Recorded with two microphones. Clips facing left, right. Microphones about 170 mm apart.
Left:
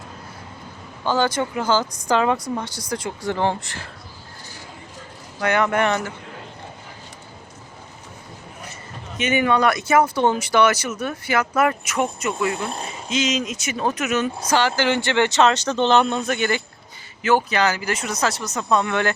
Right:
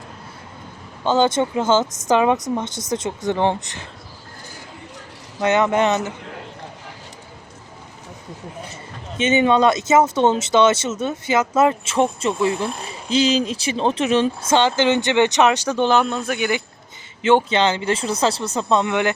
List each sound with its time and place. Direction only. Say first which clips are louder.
1.0 s speech: right 4 dB; 25° right (ahead or behind)
5.4 s speech: right 3 dB; 20° right (ahead or behind)
9.1 s speech: right 3 dB; 25° right (ahead or behind)
17.2 s speech: right 3 dB; 25° right (ahead or behind)